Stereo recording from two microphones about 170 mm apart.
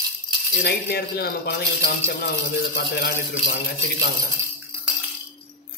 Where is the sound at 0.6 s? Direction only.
65° left (ahead or behind).